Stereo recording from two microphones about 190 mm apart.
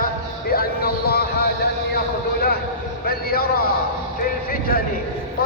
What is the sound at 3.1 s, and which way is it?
Speech, 55° left (ahead or behind).